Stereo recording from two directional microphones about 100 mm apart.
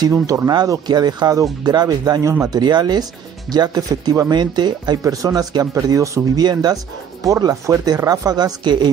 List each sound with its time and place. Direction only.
0.0 s speech: 35° right (ahead or behind)